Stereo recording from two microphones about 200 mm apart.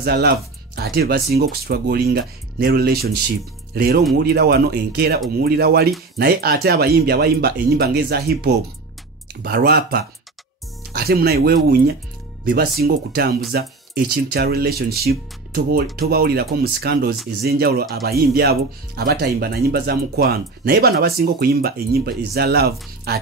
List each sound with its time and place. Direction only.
0.0 s speech: 55° right (ahead or behind)